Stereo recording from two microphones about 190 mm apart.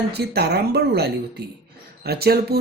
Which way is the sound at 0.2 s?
60° right (ahead or behind).